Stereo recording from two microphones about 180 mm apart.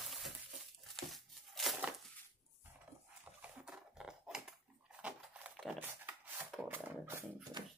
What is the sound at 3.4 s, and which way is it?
Dog, 5° right (ahead or behind).